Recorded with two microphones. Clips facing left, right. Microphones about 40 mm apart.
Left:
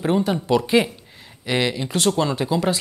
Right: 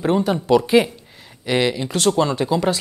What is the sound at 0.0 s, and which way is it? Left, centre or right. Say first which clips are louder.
Speech: right 2 dB; centre.